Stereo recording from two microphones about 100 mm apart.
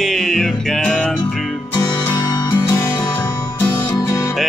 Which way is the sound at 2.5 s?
40° left (ahead or behind).